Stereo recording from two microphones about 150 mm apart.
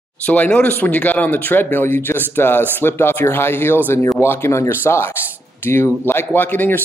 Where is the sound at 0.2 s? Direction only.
10° left (ahead or behind).